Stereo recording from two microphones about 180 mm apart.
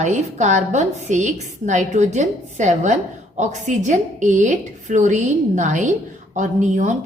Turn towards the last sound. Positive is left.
turn(degrees=-45)  # may be behind; listen again after turning